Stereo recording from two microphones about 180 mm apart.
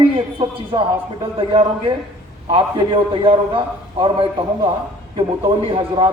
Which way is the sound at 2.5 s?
25° right (ahead or behind).